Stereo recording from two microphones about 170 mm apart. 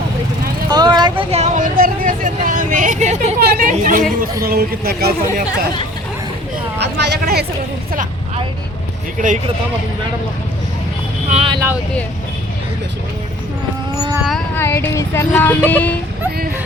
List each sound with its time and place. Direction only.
0.7 s vehicle: 25° right (ahead or behind); by 3.3 s 45° right (ahead or behind)
3.4 s chatter: 60° right (ahead or behind)
4.4 s speech: 65° right (ahead or behind)
6.7 s speech: 90° right
9.1 s speech: 50° right (ahead or behind)
11.3 s vehicle: 35° right (ahead or behind)
14.3 s a sound: 5° left (ahead or behind)
14.6 s a sound: 15° left (ahead or behind)